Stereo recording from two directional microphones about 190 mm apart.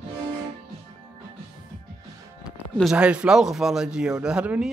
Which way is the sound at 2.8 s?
5° right (ahead or behind).